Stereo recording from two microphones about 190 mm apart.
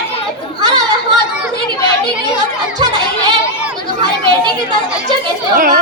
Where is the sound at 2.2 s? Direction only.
20° right (ahead or behind).